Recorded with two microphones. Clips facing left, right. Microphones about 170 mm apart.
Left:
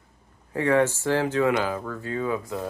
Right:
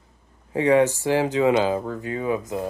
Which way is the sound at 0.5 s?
15° right (ahead or behind).